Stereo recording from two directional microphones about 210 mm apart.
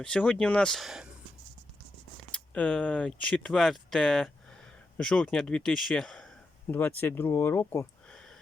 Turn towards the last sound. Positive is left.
turn(degrees=10)  # may be behind; listen again after turning